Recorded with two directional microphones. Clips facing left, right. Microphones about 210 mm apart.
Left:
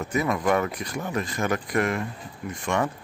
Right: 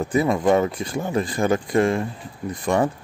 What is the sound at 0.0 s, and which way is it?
Speech, 30° right (ahead or behind).